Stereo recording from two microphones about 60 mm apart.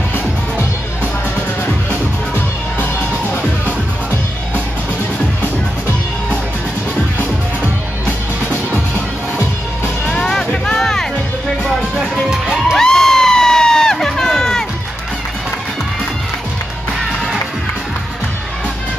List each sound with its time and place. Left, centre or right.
1.9 s music: left
10.0 s music: centre
12.7 s crowd: centre